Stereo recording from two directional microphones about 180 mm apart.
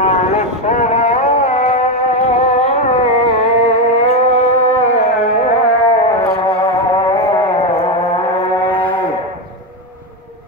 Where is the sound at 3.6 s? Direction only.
40° left (ahead or behind).